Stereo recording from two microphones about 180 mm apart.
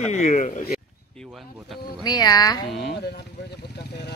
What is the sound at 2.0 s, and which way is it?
Speech, 20° left (ahead or behind).